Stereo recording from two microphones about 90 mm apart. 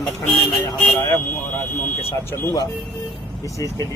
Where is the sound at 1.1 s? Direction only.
25° left (ahead or behind).